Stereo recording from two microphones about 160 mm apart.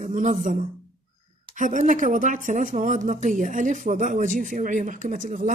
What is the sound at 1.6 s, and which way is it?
Speech, 50° right (ahead or behind).